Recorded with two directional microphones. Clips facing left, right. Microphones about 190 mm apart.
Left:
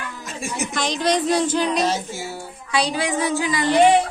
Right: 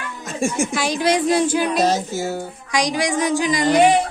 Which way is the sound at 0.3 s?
45° right (ahead or behind).